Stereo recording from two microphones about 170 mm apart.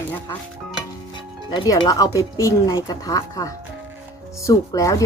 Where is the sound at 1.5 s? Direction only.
25° left (ahead or behind).